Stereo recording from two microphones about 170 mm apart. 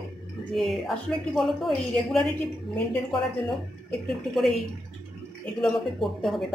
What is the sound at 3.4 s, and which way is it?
A woman's voice, centre (ahead or behind).